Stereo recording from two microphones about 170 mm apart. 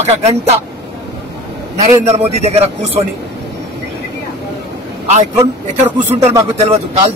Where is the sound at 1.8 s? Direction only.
40° right (ahead or behind).